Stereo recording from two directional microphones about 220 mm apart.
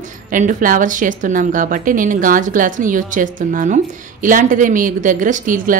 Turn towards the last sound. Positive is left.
turn(degrees=-40)  # may be behind; listen again after turning